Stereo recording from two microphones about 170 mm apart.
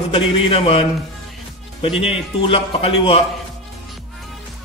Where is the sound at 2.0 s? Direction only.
35° left (ahead or behind).